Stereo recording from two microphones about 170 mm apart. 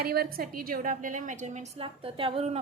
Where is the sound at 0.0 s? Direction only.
65° right (ahead or behind); by 1.6 s 45° right (ahead or behind).